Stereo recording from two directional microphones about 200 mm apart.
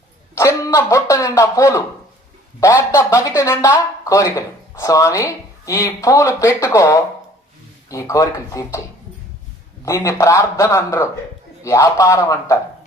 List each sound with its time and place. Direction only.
0.3 s speech: 15° left (ahead or behind)
9.8 s speech: 15° left (ahead or behind)